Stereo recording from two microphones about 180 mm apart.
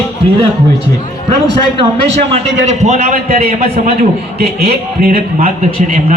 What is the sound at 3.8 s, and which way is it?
Speech, 60° right (ahead or behind).